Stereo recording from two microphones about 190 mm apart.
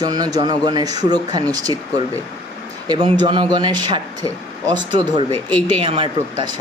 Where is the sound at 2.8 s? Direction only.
25° right (ahead or behind).